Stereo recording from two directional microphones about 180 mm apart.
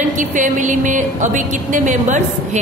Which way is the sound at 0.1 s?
45° right (ahead or behind).